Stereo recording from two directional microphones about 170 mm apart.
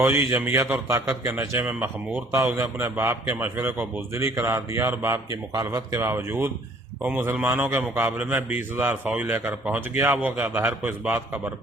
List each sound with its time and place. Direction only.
0.0 s a man's voice: 10° right (ahead or behind)